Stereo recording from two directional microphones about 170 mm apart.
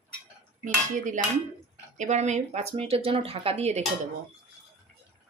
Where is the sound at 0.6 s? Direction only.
50° right (ahead or behind).